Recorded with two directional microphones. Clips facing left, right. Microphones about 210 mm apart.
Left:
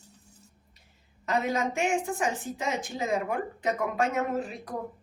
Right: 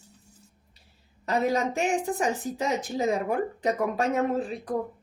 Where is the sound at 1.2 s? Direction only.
35° right (ahead or behind).